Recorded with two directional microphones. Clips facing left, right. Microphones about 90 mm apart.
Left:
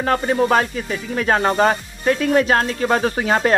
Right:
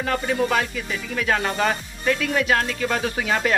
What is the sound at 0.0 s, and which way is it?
Music, 35° left (ahead or behind).